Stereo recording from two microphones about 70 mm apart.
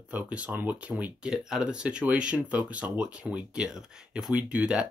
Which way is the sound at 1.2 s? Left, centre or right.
Centre.